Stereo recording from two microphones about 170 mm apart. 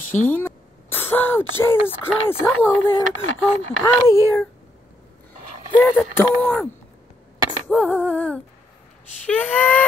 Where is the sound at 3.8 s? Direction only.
15° left (ahead or behind).